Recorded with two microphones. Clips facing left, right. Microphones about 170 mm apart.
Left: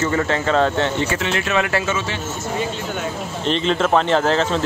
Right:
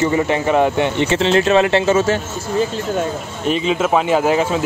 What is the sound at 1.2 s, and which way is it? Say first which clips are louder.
Speech: right 7 dB; 30° right (ahead or behind).